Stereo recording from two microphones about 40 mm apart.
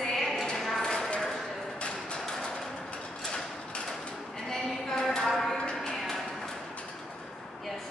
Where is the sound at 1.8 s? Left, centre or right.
Left.